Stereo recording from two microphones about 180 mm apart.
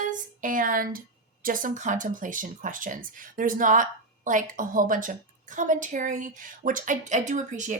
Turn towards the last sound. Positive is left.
turn(degrees=-45)  # may be behind; listen again after turning